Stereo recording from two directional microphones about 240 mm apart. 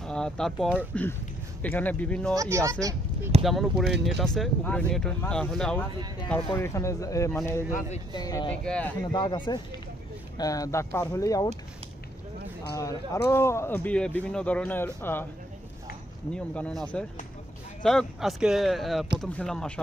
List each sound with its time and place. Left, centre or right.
0.0 s speech: centre
2.3 s speech: centre
3.4 s speech: centre
6.4 s speech: centre
7.7 s speech: left
8.2 s speech: centre
8.6 s speech: centre
9.1 s speech: centre
12.7 s speech: centre
16.3 s speech: centre